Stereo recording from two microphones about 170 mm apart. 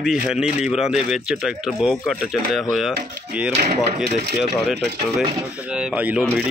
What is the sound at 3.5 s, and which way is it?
Speech, 40° right (ahead or behind).